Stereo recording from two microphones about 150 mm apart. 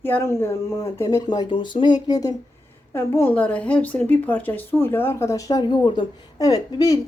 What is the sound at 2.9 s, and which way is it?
Speech, 15° left (ahead or behind).